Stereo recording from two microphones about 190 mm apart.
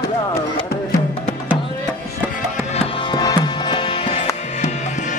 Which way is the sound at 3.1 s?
20° left (ahead or behind).